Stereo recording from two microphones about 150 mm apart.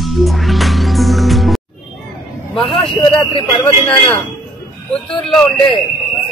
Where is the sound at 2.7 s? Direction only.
35° left (ahead or behind).